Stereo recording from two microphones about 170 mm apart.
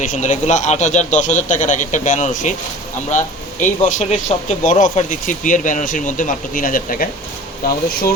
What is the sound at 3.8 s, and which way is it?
Speech, 45° left (ahead or behind).